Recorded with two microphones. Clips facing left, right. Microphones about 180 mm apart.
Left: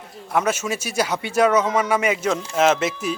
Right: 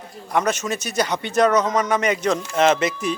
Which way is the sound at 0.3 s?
5° left (ahead or behind).